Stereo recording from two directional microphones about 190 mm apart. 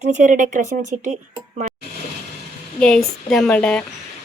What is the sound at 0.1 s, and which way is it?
Speech, 45° right (ahead or behind).